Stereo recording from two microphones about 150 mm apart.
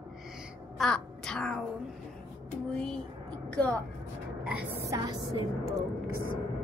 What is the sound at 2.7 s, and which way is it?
A woman's voice, 5° left (ahead or behind).